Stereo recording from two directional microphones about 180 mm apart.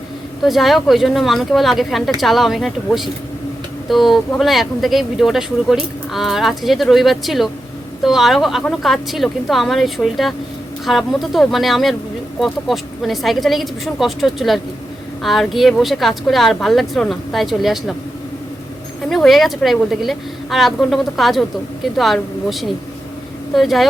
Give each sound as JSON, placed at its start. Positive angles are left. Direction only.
{"t": 0.4, "sound": "speech", "side_deg": 0}
{"t": 19.0, "sound": "speech", "side_deg": 0}